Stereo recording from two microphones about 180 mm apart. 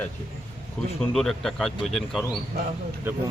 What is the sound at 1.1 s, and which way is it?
A man's voice, centre (ahead or behind).